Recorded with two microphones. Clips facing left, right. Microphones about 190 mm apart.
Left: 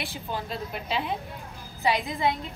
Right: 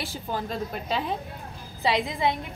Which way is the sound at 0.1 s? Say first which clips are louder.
Right 2 dB; 40° right (ahead or behind).